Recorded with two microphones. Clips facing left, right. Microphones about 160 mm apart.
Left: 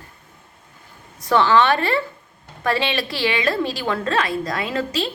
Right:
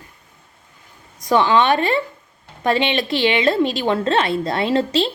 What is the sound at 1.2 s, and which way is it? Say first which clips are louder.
A woman's voice: right 1 dB; 15° right (ahead or behind).